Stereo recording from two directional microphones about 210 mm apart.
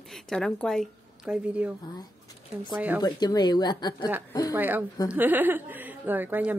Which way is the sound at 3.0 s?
20° left (ahead or behind).